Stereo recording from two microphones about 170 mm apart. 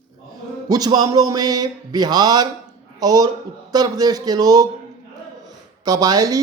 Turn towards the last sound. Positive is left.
turn(degrees=-20)  # may be behind; listen again after turning